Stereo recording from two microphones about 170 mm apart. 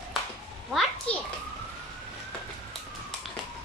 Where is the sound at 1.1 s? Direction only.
35° left (ahead or behind).